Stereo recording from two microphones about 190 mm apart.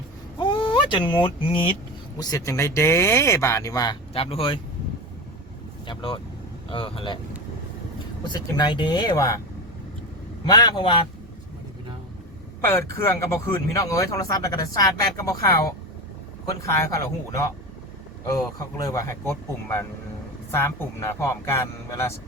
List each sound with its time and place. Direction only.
0.3 s vehicle: 25° left (ahead or behind)
2.1 s speech: 15° left (ahead or behind)
4.1 s speech: 30° left (ahead or behind)
5.8 s speech: 25° left (ahead or behind)
8.2 s speech: 20° left (ahead or behind)
10.4 s speech: 25° left (ahead or behind)
12.6 s speech: 15° left (ahead or behind)
18.9 s speech: 15° left (ahead or behind)